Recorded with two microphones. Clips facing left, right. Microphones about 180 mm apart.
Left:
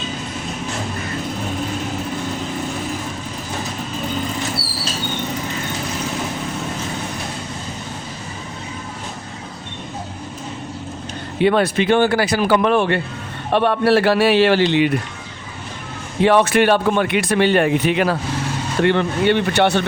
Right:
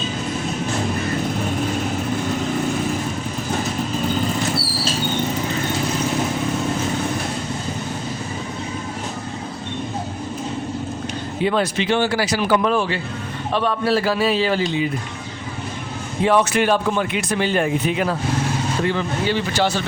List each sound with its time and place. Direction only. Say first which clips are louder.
11.3 s speech: left 5 dB; 65° left (ahead or behind)
16.2 s speech: left 3 dB; 65° left (ahead or behind)